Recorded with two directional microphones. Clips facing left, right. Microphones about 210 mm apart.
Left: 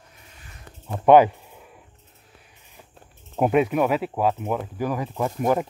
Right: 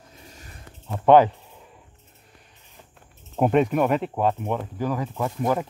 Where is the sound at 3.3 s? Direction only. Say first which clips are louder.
Even; 5° left (ahead or behind).